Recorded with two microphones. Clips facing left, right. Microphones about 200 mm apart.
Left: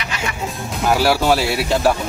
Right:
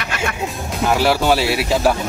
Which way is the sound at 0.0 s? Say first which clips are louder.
Right 2 dB; 55° right (ahead or behind).